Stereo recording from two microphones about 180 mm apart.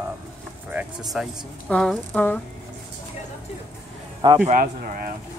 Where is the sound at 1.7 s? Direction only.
5° left (ahead or behind).